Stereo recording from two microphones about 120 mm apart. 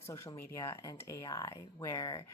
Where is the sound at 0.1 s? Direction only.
25° left (ahead or behind).